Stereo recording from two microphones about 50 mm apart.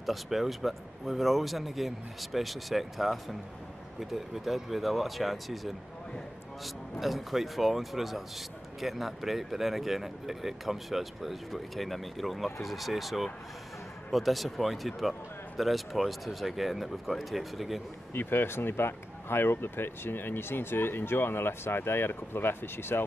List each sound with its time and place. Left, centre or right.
0.0 s speech: centre
18.1 s speech: left